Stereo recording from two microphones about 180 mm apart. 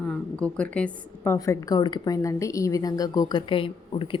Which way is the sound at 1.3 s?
20° left (ahead or behind).